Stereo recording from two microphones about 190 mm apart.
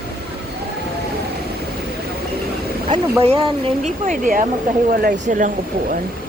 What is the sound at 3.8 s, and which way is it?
Speech, 45° right (ahead or behind).